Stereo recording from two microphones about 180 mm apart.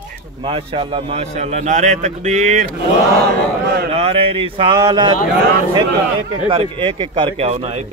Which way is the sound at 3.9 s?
30° right (ahead or behind).